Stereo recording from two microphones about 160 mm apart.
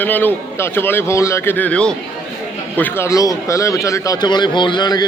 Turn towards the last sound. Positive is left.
turn(degrees=25)  # may be behind; listen again after turning